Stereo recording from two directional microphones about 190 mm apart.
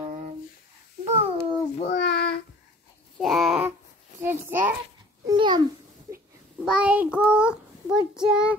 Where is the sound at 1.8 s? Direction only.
55° left (ahead or behind).